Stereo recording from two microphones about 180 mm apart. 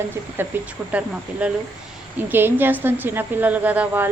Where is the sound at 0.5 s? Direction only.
10° right (ahead or behind).